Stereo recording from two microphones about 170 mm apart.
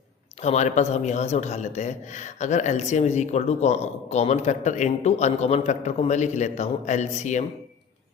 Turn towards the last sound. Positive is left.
turn(degrees=45)  # may be behind; listen again after turning